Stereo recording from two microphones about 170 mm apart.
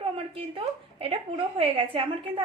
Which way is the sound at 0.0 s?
35° right (ahead or behind).